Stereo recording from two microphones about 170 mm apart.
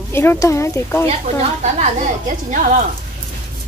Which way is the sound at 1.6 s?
45° right (ahead or behind).